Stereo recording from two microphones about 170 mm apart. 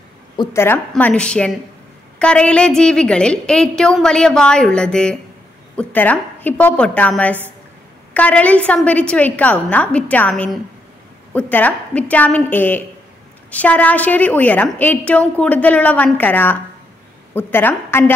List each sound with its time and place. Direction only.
0.4 s a woman's voice: 15° left (ahead or behind)